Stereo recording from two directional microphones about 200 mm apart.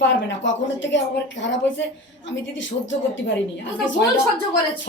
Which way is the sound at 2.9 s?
65° left (ahead or behind).